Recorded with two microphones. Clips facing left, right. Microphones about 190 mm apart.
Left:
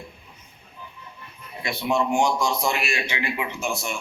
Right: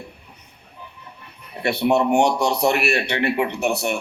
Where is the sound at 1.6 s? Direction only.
65° right (ahead or behind).